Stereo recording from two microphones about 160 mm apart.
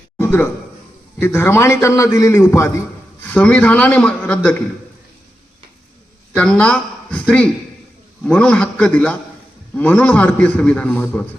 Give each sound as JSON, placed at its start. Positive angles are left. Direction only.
{"t": 0.2, "sound": "a sound", "side_deg": 15}
{"t": 1.2, "sound": "a man's voice", "side_deg": 15}
{"t": 6.3, "sound": "a man's voice", "side_deg": 5}